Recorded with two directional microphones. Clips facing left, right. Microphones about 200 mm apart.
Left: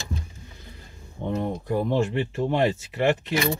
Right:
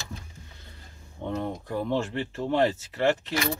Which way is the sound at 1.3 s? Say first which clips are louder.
Left 4 dB; 15° left (ahead or behind).